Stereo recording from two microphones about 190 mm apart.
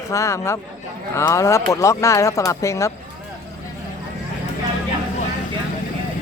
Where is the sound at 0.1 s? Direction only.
15° left (ahead or behind).